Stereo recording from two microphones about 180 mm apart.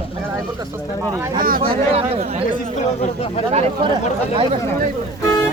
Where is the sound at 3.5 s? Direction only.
35° right (ahead or behind).